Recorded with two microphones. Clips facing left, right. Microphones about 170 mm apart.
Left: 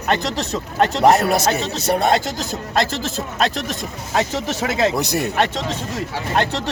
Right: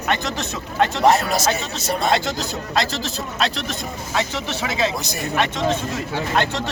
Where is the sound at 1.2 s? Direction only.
60° left (ahead or behind).